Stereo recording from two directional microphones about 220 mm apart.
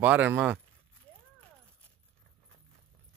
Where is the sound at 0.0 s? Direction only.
5° right (ahead or behind).